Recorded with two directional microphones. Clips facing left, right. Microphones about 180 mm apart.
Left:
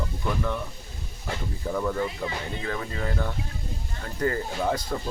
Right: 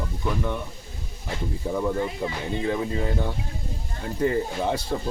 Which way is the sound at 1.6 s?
20° right (ahead or behind).